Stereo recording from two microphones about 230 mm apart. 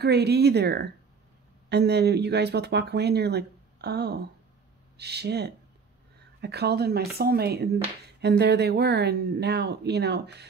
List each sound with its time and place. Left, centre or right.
0.0 s speech: right